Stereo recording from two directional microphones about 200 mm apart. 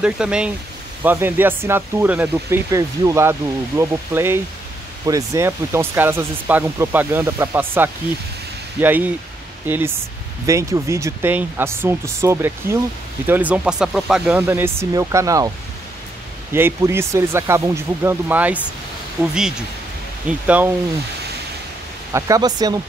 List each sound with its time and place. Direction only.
0.0 s speech: 5° right (ahead or behind)
16.5 s speech: 10° right (ahead or behind)
22.1 s speech: 20° right (ahead or behind)